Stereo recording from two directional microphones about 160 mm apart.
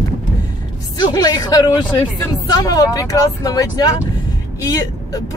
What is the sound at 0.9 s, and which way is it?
Speech, 25° left (ahead or behind).